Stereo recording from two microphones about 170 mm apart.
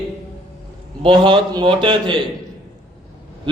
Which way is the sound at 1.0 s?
30° right (ahead or behind).